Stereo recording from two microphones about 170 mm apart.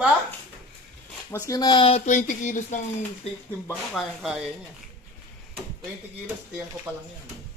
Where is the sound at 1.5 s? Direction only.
25° left (ahead or behind); by 2.8 s 45° left (ahead or behind).